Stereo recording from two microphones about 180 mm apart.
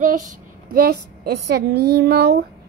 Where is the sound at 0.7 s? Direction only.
60° right (ahead or behind).